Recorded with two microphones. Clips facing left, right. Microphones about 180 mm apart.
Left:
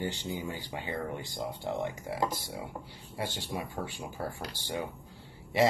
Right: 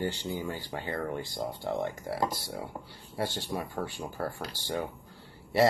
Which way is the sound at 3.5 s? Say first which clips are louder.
Right 2 dB; 15° left (ahead or behind).